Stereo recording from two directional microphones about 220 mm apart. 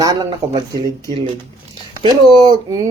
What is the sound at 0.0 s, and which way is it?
Speech, 15° right (ahead or behind).